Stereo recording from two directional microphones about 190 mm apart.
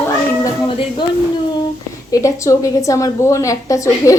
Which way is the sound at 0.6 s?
25° left (ahead or behind).